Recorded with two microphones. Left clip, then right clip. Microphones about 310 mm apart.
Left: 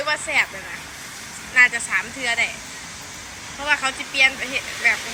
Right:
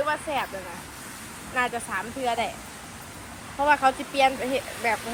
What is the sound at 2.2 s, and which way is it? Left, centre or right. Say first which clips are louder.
Speech: left 3 dB; centre.